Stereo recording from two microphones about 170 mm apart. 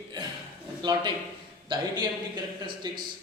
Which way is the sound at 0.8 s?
25° right (ahead or behind).